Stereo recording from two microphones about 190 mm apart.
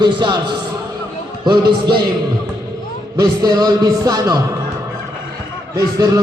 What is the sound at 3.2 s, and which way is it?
A man's voice, 20° right (ahead or behind).